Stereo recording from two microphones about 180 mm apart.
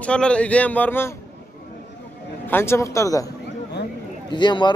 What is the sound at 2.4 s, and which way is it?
Speech, 15° left (ahead or behind).